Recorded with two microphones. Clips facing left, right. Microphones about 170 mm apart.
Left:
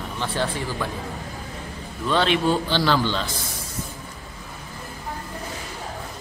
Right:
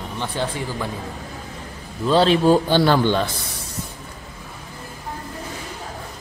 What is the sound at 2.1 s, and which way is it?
A man's voice, 35° right (ahead or behind).